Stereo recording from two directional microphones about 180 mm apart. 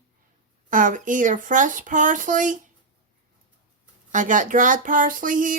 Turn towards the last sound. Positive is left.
turn(degrees=-45)  # may be behind; listen again after turning